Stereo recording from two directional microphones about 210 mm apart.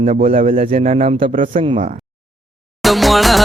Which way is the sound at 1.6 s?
25° right (ahead or behind).